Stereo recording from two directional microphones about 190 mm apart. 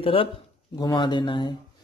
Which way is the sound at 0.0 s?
30° left (ahead or behind).